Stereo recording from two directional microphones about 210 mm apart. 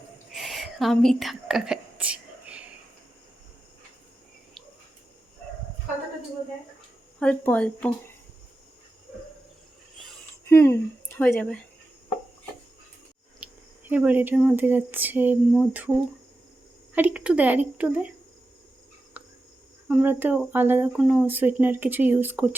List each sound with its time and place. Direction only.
0.3 s whispering: centre (ahead or behind)
7.2 s speech: 5° left (ahead or behind)
10.5 s speech: 10° left (ahead or behind)
13.4 s speech: 5° right (ahead or behind)
19.2 s cricket: 10° right (ahead or behind)
19.9 s speech: 10° right (ahead or behind)